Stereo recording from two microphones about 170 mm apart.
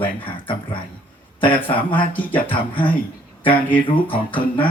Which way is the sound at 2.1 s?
10° left (ahead or behind).